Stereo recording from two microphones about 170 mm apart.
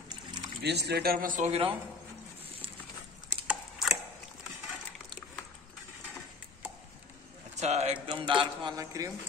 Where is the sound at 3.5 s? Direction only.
5° right (ahead or behind).